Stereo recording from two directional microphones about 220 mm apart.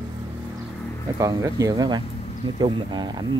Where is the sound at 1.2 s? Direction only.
15° right (ahead or behind).